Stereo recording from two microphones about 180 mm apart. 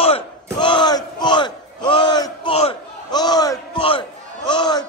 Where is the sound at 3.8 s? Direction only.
30° left (ahead or behind).